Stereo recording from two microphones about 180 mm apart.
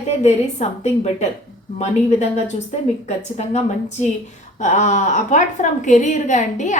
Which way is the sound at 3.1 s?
40° left (ahead or behind).